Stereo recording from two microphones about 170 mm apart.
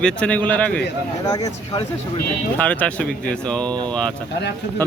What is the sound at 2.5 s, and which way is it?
A man's voice, 10° left (ahead or behind).